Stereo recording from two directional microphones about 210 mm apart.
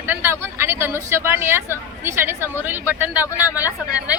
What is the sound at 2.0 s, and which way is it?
A woman's voice, 10° right (ahead or behind).